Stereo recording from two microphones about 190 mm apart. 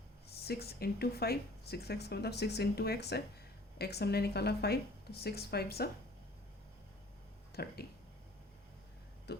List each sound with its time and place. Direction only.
0.3 s speech: 55° left (ahead or behind)
7.5 s speech: 55° left (ahead or behind)
9.3 s speech: 60° left (ahead or behind)